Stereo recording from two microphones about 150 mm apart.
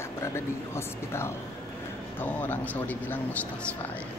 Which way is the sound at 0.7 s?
15° left (ahead or behind).